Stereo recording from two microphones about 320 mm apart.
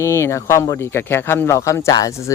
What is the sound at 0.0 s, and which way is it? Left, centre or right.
Speech, centre.